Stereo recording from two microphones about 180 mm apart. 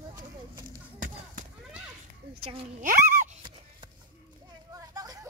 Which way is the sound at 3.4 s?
25° right (ahead or behind).